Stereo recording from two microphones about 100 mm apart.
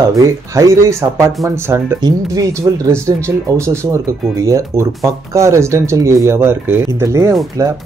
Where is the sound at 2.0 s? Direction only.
40° right (ahead or behind).